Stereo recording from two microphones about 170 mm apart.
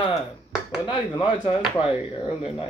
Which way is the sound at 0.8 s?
30° left (ahead or behind).